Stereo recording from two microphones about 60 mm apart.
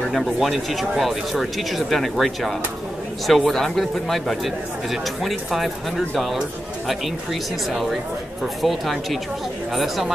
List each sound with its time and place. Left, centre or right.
0.1 s speech: centre
8.6 s speech: centre